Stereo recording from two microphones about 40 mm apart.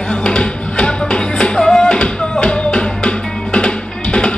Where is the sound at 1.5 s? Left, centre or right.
Centre.